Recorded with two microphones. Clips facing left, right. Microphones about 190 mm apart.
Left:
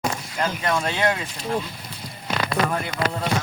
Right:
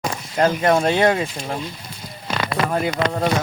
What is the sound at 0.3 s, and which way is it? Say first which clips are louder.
Speech: right 9 dB; 40° right (ahead or behind).